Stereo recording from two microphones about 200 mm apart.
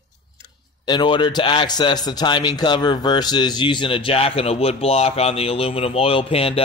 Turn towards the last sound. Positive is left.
turn(degrees=30)  # may be behind; listen again after turning